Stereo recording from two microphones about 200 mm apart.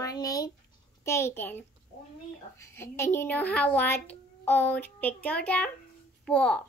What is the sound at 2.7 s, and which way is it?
A child's voice, 10° left (ahead or behind).